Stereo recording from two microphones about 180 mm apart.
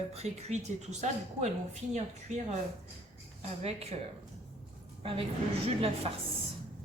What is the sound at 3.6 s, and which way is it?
Speech, 35° right (ahead or behind).